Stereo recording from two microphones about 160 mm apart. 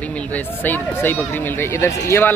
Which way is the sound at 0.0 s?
10° left (ahead or behind).